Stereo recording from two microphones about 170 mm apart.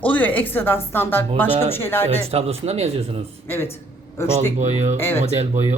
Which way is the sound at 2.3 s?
35° right (ahead or behind).